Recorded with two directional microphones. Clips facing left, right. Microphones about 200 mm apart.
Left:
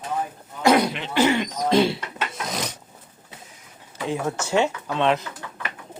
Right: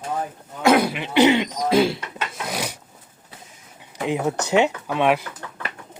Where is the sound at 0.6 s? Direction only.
Centre (ahead or behind); by 1.4 s 20° right (ahead or behind).